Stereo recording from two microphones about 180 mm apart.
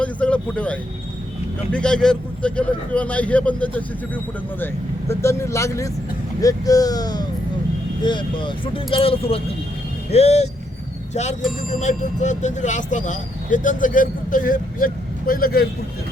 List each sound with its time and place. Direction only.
0.0 s a man's voice: 5° left (ahead or behind); by 15.6 s 55° left (ahead or behind)